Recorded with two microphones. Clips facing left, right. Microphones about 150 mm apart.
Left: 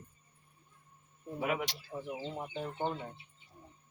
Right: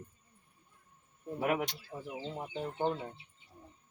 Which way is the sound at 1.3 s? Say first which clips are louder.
Right 2 dB; 50° right (ahead or behind).